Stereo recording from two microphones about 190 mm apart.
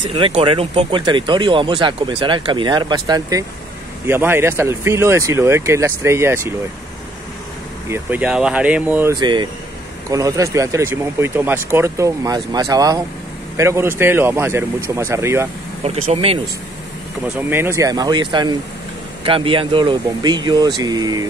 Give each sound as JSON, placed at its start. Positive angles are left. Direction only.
{"t": 0.0, "sound": "speech", "side_deg": -30}
{"t": 7.9, "sound": "speech", "side_deg": -10}
{"t": 16.1, "sound": "speech", "side_deg": -30}
{"t": 17.4, "sound": "speech", "side_deg": -10}